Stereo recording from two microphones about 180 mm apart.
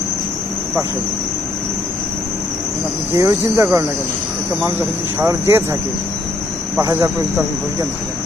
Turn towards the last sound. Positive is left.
turn(degrees=-15)  # may be behind; listen again after turning